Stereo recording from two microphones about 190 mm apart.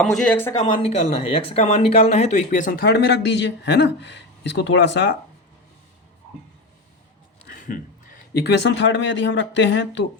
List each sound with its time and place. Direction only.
0.0 s speech: centre (ahead or behind)
0.6 s speech: 35° left (ahead or behind); by 5.1 s 65° left (ahead or behind)
7.4 s a man's voice: 45° left (ahead or behind); by 10.1 s 75° left (ahead or behind)